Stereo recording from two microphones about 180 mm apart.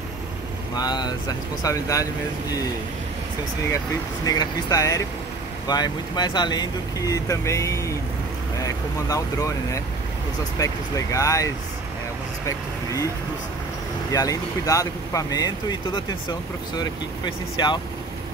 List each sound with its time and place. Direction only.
0.7 s speech: 25° left (ahead or behind)
4.3 s speech: 20° left (ahead or behind)
14.1 s speech: 20° left (ahead or behind)